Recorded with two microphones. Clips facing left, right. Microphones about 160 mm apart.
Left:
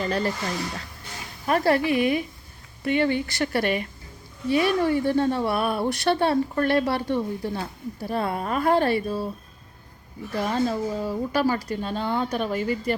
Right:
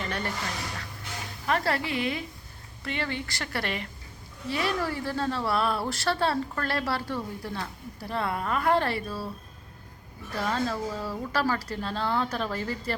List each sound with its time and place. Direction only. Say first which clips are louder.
0.0 s speech: left 7 dB; 25° left (ahead or behind)
1.5 s speech: left 6 dB; 25° left (ahead or behind)
1.8 s a woman's voice: left 8 dB; 30° right (ahead or behind)
2.8 s speech: left 10 dB; 25° left (ahead or behind)
10.3 s speech: left 4 dB; 20° left (ahead or behind)